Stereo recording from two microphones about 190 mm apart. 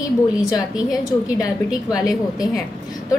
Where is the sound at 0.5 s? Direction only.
20° left (ahead or behind).